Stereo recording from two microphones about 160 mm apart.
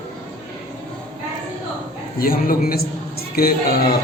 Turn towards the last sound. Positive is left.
turn(degrees=70)  # may be behind; listen again after turning